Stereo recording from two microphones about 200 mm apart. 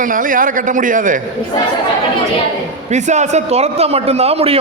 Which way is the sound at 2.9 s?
35° right (ahead or behind).